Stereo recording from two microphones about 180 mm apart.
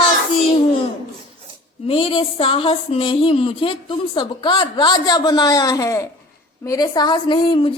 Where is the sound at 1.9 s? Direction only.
30° left (ahead or behind).